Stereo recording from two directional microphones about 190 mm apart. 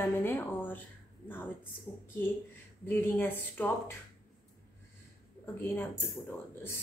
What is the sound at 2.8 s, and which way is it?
Speech, 10° left (ahead or behind).